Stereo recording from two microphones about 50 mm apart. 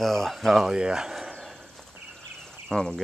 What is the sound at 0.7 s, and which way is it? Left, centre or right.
Speech, centre.